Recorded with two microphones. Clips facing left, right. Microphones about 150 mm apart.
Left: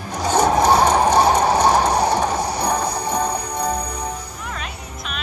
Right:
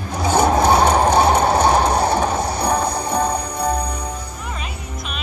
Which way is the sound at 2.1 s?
5° right (ahead or behind).